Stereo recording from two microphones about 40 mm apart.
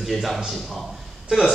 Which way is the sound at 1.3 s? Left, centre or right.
Centre.